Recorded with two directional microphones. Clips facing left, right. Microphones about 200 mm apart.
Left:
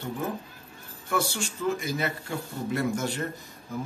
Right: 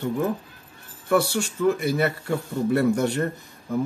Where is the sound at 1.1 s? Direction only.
65° right (ahead or behind).